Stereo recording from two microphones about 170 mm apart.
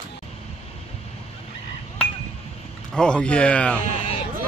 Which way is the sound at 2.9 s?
5° left (ahead or behind).